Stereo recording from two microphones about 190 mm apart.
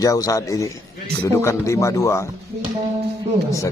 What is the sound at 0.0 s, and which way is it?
Speech, 20° left (ahead or behind).